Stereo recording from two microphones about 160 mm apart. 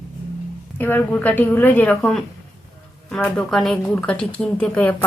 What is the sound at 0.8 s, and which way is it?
Speech, 10° left (ahead or behind).